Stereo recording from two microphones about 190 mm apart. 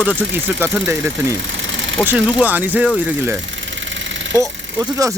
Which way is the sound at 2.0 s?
10° right (ahead or behind).